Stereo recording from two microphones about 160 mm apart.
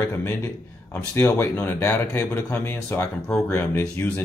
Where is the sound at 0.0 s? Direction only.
15° left (ahead or behind).